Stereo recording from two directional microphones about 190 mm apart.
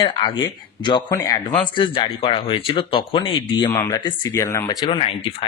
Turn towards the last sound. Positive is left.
turn(degrees=30)  # may be behind; listen again after turning